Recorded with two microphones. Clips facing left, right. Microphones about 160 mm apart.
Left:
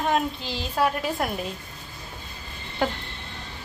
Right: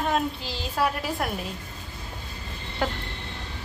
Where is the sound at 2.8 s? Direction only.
Centre (ahead or behind).